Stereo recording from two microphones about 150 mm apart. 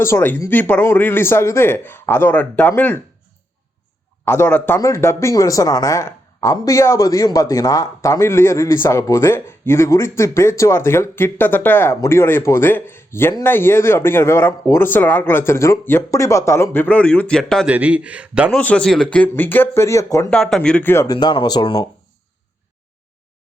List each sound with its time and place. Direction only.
0.0 s speech: 15° left (ahead or behind)
4.3 s speech: 15° left (ahead or behind)
17.7 s a man's voice: 10° right (ahead or behind)
18.5 s speech: 5° left (ahead or behind)
20.3 s speech: 5° left (ahead or behind); by 21.8 s 30° left (ahead or behind)